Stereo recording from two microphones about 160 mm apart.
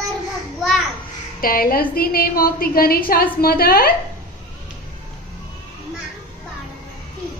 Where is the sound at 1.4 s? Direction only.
65° left (ahead or behind).